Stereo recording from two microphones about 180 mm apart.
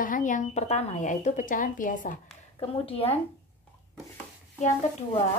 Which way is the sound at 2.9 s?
35° left (ahead or behind).